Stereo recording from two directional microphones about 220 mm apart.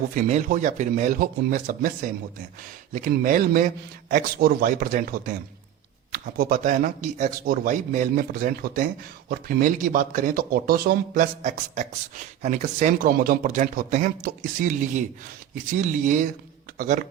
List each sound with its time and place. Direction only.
0.1 s speech: 35° right (ahead or behind)